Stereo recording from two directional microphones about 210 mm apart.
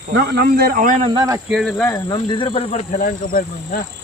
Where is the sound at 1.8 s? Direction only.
20° left (ahead or behind).